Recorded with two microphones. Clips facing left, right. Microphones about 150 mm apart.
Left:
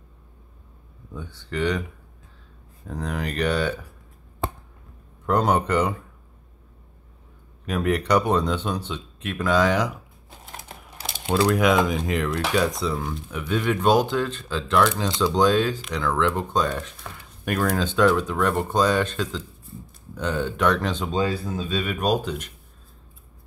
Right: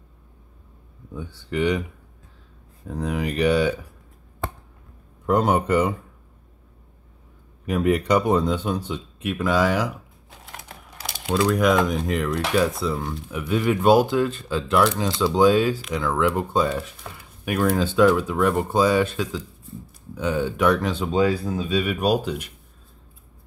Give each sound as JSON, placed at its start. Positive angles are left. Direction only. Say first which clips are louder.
{"t": 1.1, "sound": "speech", "louder": "right 3 dB", "side_deg": -10}
{"t": 2.9, "sound": "speech", "louder": "right 3 dB", "side_deg": -10}
{"t": 5.2, "sound": "speech", "louder": "right 1 dB", "side_deg": -10}
{"t": 7.8, "sound": "speech", "louder": "right 1 dB", "side_deg": -10}
{"t": 11.1, "sound": "a sound", "louder": "even", "side_deg": 25}
{"t": 11.4, "sound": "speech", "louder": "right 1 dB", "side_deg": 0}